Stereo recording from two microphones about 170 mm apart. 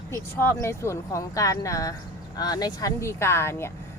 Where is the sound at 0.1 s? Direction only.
15° left (ahead or behind).